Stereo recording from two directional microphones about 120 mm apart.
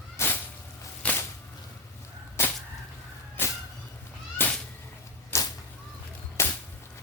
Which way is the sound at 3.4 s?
15° left (ahead or behind).